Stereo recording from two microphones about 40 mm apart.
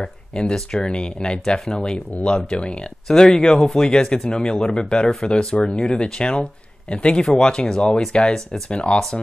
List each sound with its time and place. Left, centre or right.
0.0 s speech: left